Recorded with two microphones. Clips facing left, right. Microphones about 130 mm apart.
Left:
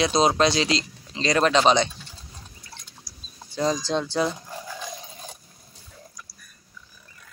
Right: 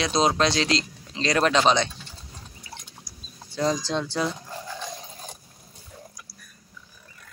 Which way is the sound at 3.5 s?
5° left (ahead or behind).